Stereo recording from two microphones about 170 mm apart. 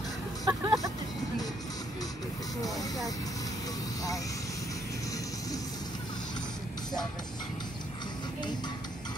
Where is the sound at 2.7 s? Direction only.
Centre (ahead or behind).